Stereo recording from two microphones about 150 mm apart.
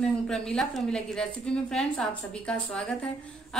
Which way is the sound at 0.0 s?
5° left (ahead or behind).